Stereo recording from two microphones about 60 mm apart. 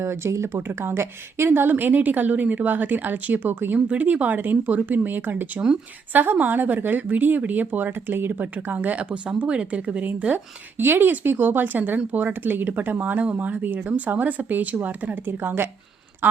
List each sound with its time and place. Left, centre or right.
0.0 s speech: right